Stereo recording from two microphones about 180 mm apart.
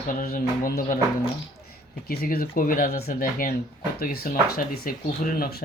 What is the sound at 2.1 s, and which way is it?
Speech, 55° left (ahead or behind).